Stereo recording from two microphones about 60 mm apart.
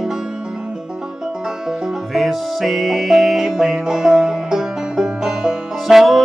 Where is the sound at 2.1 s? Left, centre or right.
Centre.